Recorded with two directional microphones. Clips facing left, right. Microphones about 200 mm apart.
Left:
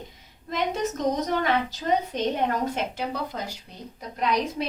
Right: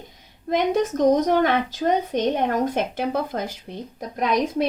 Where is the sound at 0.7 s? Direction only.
50° right (ahead or behind).